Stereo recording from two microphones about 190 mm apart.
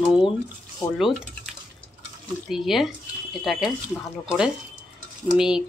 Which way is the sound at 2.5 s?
Centre (ahead or behind).